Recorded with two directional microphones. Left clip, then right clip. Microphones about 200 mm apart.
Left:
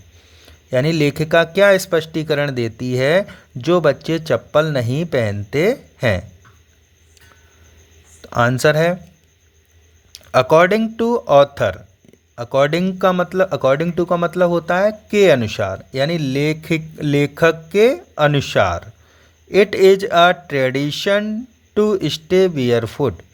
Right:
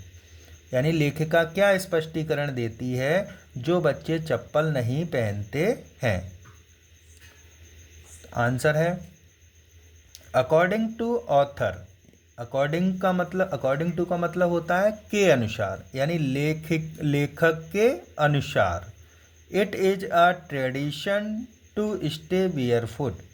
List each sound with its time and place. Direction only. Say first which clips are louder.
0.7 s a man's voice: left 8 dB; 25° left (ahead or behind)
8.2 s a man's voice: left 9 dB; 30° left (ahead or behind)
10.1 s a man's voice: left 9 dB; 25° left (ahead or behind)